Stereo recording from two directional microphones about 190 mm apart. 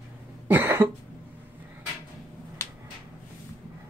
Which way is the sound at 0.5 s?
10° right (ahead or behind).